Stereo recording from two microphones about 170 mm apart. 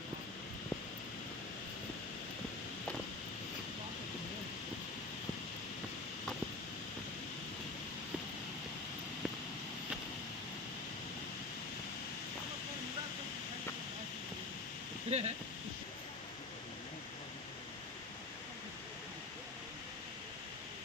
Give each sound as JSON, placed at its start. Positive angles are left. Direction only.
{"t": 15.1, "sound": "speech", "side_deg": -40}